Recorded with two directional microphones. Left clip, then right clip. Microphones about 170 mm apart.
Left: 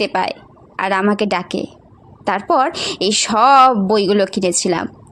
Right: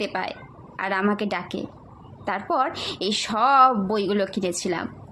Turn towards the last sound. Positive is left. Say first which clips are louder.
# left 9 dB
turn(degrees=30)  # may be behind; listen again after turning